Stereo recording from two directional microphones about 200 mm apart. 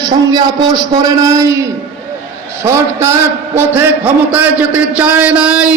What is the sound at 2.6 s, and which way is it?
Speech, 15° right (ahead or behind).